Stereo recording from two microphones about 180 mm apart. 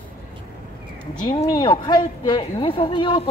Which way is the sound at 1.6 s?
25° left (ahead or behind).